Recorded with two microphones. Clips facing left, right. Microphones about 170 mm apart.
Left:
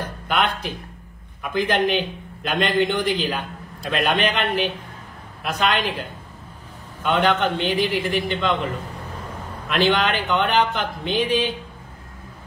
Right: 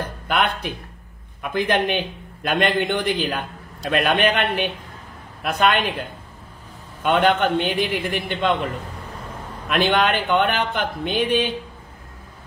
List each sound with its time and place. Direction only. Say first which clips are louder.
0.0 s a sound: right 1 dB; 60° right (ahead or behind)
1.5 s a man's voice: even; 55° right (ahead or behind)
7.0 s a man's voice: right 2 dB; 55° right (ahead or behind)
9.7 s a man's voice: right 1 dB; 55° right (ahead or behind)